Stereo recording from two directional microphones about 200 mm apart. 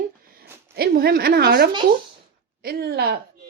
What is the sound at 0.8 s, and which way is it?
A woman's voice, 50° right (ahead or behind).